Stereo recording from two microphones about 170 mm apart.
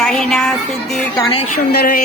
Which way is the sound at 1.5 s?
60° left (ahead or behind).